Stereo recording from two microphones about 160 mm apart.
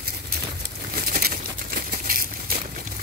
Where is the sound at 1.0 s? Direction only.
70° right (ahead or behind).